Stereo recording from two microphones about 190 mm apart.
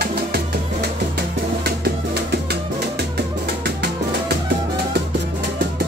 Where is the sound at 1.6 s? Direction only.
55° right (ahead or behind).